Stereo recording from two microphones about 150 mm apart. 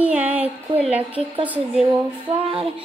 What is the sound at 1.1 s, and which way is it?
Speech, 40° right (ahead or behind).